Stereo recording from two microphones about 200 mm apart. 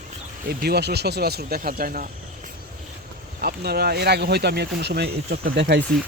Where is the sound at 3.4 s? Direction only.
50° right (ahead or behind).